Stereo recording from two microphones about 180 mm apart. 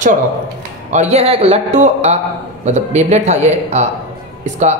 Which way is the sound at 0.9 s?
40° right (ahead or behind).